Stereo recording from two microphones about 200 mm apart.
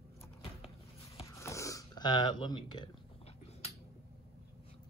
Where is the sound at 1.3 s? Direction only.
15° left (ahead or behind).